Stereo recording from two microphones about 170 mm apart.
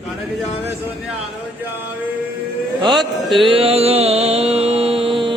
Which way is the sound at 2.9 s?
Centre (ahead or behind).